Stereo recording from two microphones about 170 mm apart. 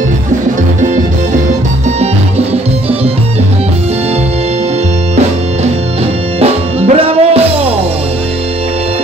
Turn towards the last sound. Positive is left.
turn(degrees=-35)  # may be behind; listen again after turning